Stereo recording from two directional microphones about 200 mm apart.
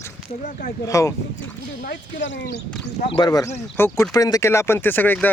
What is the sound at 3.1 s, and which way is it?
Speech, 20° left (ahead or behind).